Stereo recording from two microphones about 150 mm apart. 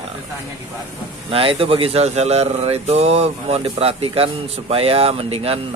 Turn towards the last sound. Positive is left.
turn(degrees=-40)  # may be behind; listen again after turning